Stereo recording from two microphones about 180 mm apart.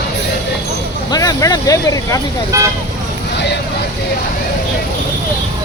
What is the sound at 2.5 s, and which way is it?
Speech, 15° right (ahead or behind).